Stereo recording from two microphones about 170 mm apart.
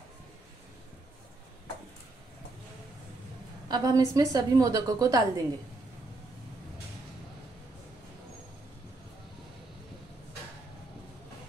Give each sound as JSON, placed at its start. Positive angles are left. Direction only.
{"t": 3.6, "sound": "a woman's voice", "side_deg": -25}